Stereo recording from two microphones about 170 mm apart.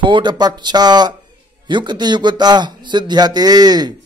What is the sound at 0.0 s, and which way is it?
Speech, 25° right (ahead or behind).